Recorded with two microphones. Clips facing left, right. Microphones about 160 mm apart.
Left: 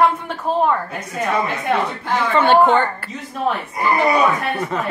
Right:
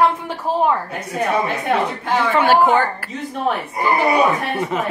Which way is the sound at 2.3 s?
10° right (ahead or behind).